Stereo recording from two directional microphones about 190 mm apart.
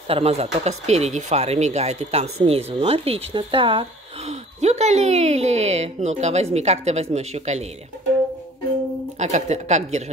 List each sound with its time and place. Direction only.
0.1 s speech: 35° right (ahead or behind)
9.2 s speech: 35° right (ahead or behind)